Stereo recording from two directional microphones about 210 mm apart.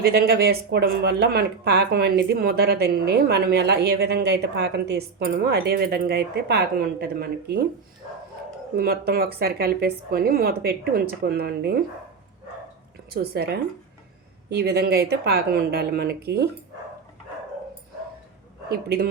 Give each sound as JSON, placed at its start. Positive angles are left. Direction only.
{"t": 0.0, "sound": "speech", "side_deg": -50}
{"t": 8.7, "sound": "speech", "side_deg": -45}
{"t": 13.1, "sound": "speech", "side_deg": -50}
{"t": 18.7, "sound": "speech", "side_deg": -45}